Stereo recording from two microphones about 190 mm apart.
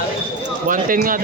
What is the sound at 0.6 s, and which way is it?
Speech, 45° right (ahead or behind).